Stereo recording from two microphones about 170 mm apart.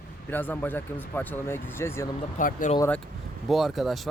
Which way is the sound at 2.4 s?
50° left (ahead or behind).